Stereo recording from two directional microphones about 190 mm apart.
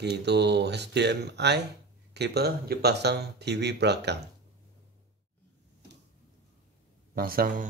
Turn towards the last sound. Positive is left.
turn(degrees=-50)  # may be behind; listen again after turning